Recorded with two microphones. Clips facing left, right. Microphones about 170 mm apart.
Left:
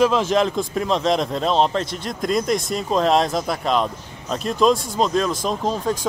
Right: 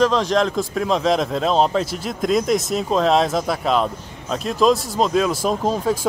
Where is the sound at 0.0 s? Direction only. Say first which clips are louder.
Even; 5° left (ahead or behind).